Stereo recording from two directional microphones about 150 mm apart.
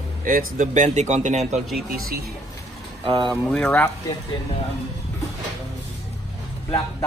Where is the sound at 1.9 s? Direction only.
90° right.